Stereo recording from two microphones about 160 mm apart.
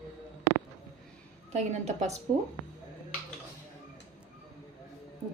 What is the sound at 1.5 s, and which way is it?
Speech, 45° right (ahead or behind).